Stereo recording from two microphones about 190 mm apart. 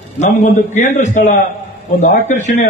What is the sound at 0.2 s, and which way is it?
A man's voice, 40° left (ahead or behind).